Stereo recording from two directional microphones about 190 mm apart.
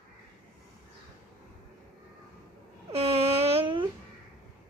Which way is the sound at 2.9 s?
30° right (ahead or behind).